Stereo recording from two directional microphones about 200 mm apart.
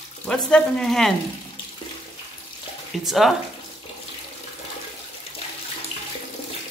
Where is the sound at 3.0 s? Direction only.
Centre (ahead or behind).